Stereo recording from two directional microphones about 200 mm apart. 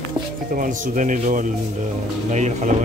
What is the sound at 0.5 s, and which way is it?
Speech, 40° right (ahead or behind).